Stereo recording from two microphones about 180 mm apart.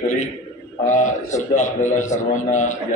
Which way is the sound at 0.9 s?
45° left (ahead or behind).